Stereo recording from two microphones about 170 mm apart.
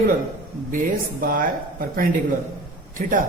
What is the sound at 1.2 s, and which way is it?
A woman's voice, 55° right (ahead or behind).